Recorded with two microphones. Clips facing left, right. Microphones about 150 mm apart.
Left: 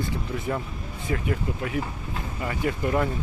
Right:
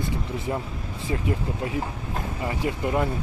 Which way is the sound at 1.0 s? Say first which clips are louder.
Even; 25° right (ahead or behind).